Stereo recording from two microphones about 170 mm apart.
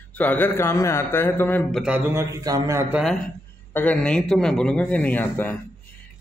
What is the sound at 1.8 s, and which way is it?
A man's voice, 10° right (ahead or behind).